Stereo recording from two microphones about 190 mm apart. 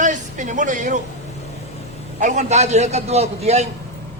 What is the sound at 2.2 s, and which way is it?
A man's voice, 40° right (ahead or behind).